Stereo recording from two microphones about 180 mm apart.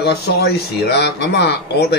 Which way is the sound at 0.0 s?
65° left (ahead or behind).